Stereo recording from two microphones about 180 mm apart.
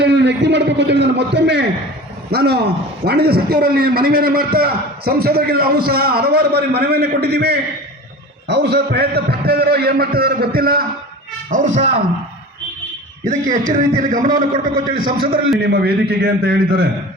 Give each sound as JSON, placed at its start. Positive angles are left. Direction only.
{"t": 0.0, "sound": "a man's voice", "side_deg": -70}
{"t": 11.5, "sound": "a man's voice", "side_deg": -45}
{"t": 13.2, "sound": "a man's voice", "side_deg": -45}